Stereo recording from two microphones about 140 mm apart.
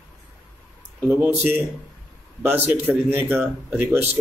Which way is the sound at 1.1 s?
15° right (ahead or behind).